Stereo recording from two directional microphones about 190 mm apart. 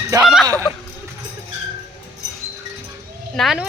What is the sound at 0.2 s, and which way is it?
Speech, centre (ahead or behind).